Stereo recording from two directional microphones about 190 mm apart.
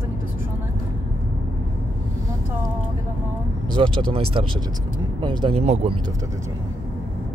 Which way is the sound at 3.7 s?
25° right (ahead or behind).